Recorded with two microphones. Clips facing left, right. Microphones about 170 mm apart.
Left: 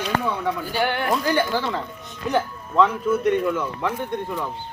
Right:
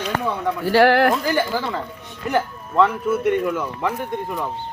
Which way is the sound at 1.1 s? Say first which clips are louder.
Even; 5° right (ahead or behind).